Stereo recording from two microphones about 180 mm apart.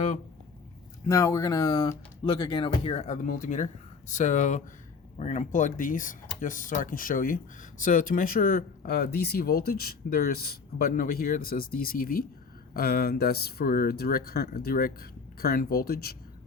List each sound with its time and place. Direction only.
1.0 s speech: 15° left (ahead or behind); by 16.1 s 60° left (ahead or behind)